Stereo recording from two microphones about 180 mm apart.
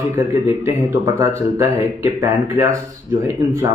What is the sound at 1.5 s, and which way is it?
Speech, 15° right (ahead or behind).